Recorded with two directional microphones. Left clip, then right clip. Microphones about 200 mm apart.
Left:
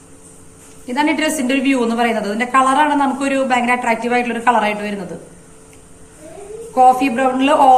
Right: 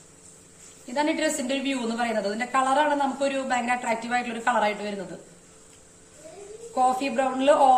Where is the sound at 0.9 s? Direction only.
50° right (ahead or behind).